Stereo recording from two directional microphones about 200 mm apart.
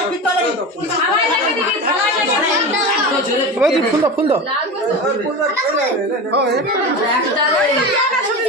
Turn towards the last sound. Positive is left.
turn(degrees=-55)  # may be behind; listen again after turning